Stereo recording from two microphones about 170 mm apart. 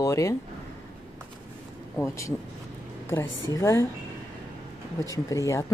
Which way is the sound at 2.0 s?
15° left (ahead or behind).